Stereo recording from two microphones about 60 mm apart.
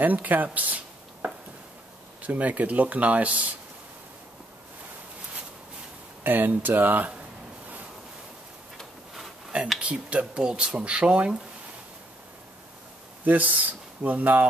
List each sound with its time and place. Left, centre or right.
0.0 s a sound: right
2.2 s speech: right
6.2 s speech: right
9.8 s speech: right
13.2 s speech: right